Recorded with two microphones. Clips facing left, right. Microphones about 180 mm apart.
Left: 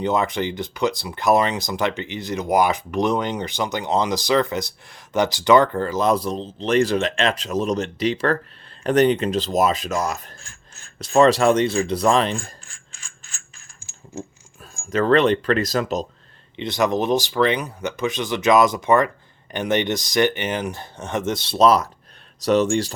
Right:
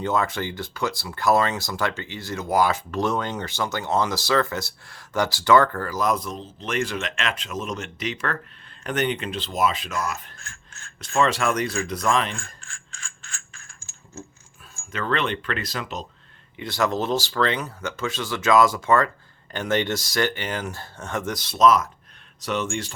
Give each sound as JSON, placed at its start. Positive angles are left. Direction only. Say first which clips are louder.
{"t": 0.0, "sound": "speech", "louder": "left 3 dB", "side_deg": 20}
{"t": 14.8, "sound": "speech", "louder": "left 9 dB", "side_deg": 40}
{"t": 16.6, "sound": "speech", "louder": "left 4 dB", "side_deg": 20}